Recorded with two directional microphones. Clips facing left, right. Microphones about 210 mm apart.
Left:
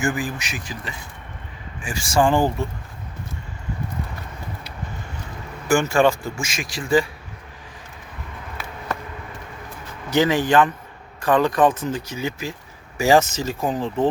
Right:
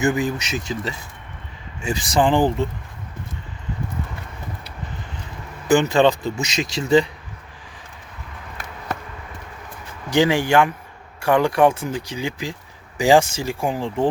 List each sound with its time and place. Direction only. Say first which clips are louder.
0.0 s speech: right 4 dB; 25° right (ahead or behind)
5.6 s speech: right 2 dB; 20° right (ahead or behind)
10.1 s speech: right 1 dB; 15° right (ahead or behind)